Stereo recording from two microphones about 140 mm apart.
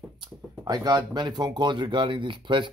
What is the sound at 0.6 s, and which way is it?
Speech, 30° right (ahead or behind).